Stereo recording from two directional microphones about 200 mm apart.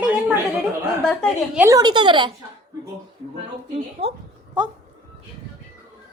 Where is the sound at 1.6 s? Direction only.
20° right (ahead or behind).